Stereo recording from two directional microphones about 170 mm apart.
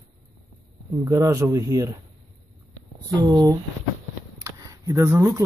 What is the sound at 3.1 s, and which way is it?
Speech, 20° right (ahead or behind).